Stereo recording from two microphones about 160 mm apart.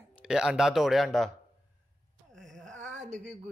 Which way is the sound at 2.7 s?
50° right (ahead or behind).